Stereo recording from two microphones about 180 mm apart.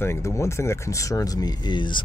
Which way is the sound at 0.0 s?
15° left (ahead or behind).